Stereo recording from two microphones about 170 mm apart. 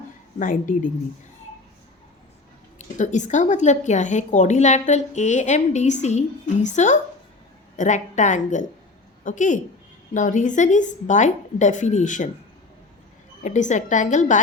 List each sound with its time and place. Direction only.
0.3 s a woman's voice: 50° left (ahead or behind)
2.7 s a woman's voice: 45° left (ahead or behind)
13.4 s a woman's voice: 45° left (ahead or behind)